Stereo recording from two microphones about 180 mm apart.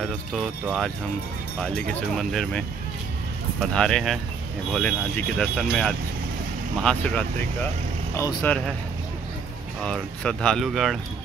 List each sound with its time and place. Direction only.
0.0 s speech: centre (ahead or behind)
3.7 s speech: 5° left (ahead or behind)
8.4 s speech: 5° left (ahead or behind)
9.8 s speech: 5° left (ahead or behind)